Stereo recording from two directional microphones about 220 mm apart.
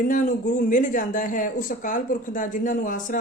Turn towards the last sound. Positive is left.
turn(degrees=35)  # may be behind; listen again after turning